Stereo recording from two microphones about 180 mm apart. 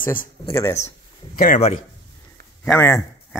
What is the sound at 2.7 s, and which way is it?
Speech, 15° left (ahead or behind).